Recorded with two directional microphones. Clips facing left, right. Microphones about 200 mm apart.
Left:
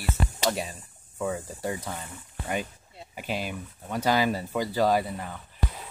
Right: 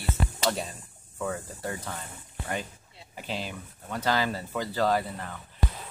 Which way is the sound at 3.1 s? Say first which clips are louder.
Left 3 dB; 15° left (ahead or behind).